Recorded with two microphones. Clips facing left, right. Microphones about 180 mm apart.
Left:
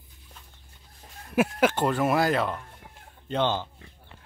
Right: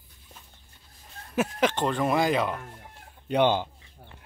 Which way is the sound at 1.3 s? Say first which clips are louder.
Left 2 dB; 10° left (ahead or behind).